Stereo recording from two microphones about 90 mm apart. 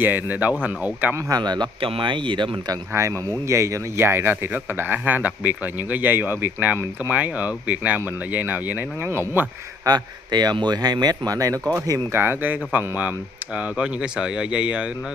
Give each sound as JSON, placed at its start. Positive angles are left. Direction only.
{"t": 0.0, "sound": "speech", "side_deg": -20}
{"t": 1.1, "sound": "speech", "side_deg": -50}
{"t": 1.8, "sound": "speech", "side_deg": -75}
{"t": 2.9, "sound": "speech", "side_deg": -30}
{"t": 9.8, "sound": "speech", "side_deg": -50}
{"t": 12.1, "sound": "speech", "side_deg": -25}